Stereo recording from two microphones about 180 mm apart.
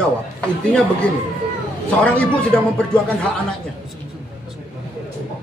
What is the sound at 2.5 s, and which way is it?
Speech, 5° left (ahead or behind).